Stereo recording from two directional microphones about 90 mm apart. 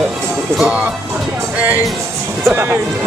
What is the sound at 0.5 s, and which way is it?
Speech, 10° right (ahead or behind).